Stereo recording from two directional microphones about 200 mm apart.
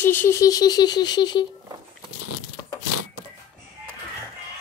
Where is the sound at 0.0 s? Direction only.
10° left (ahead or behind).